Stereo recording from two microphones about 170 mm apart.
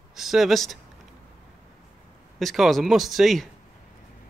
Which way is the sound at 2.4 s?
Centre (ahead or behind).